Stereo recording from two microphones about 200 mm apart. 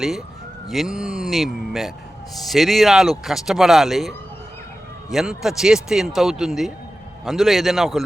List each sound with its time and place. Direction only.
0.7 s speech: centre (ahead or behind)
5.1 s speech: centre (ahead or behind)